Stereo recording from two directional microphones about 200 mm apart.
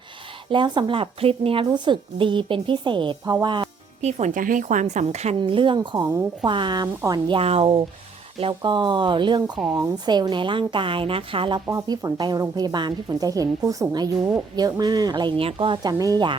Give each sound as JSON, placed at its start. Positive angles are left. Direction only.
{"t": 0.5, "sound": "a woman's voice", "side_deg": -25}
{"t": 4.0, "sound": "a woman's voice", "side_deg": -40}